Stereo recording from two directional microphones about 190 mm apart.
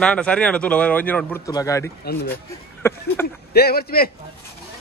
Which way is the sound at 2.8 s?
15° left (ahead or behind).